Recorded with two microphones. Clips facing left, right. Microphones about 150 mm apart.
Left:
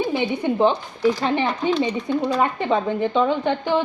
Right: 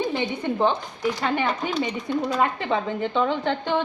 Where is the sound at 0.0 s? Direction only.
15° left (ahead or behind).